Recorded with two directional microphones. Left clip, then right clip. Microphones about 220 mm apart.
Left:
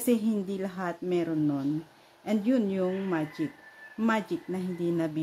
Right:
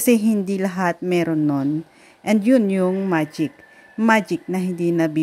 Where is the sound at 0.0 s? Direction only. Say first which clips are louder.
Right 10 dB; 30° right (ahead or behind).